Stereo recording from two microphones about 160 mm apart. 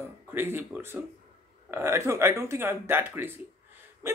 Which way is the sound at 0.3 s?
15° right (ahead or behind).